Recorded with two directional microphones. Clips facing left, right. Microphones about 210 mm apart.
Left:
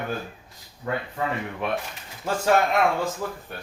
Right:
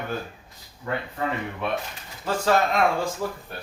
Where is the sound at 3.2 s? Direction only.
10° right (ahead or behind).